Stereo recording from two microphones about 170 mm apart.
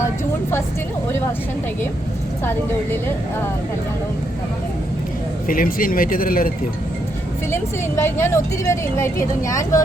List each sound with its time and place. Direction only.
2.4 s a woman's voice: 15° left (ahead or behind)
5.5 s speech: 55° left (ahead or behind)
7.5 s a woman's voice: 15° left (ahead or behind)